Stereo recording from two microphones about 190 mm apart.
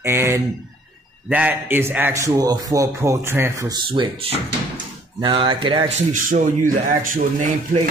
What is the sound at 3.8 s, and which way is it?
Speech, 25° right (ahead or behind).